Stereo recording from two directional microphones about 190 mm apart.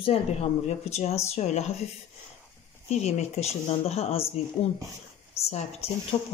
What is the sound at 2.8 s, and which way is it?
Speech, 35° left (ahead or behind).